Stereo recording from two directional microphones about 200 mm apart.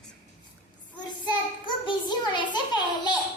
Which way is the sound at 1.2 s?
20° left (ahead or behind).